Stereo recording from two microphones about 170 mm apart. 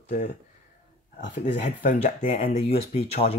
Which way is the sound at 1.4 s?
45° left (ahead or behind).